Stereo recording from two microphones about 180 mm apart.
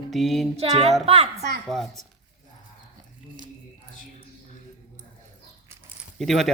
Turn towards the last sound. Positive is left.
turn(degrees=0)  # may be behind; listen again after turning